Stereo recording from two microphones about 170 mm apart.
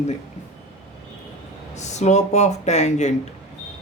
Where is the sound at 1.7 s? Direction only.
40° left (ahead or behind).